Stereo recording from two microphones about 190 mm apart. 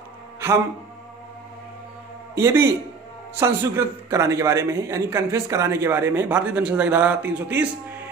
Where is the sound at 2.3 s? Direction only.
15° right (ahead or behind).